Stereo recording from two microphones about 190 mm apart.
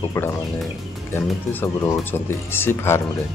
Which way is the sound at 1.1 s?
10° left (ahead or behind).